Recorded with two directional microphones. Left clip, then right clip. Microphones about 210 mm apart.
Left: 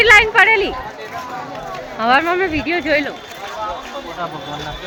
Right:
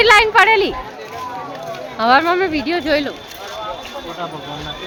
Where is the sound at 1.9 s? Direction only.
15° right (ahead or behind).